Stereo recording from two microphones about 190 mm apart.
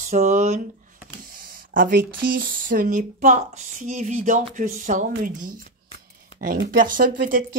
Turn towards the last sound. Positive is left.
turn(degrees=-45)  # may be behind; listen again after turning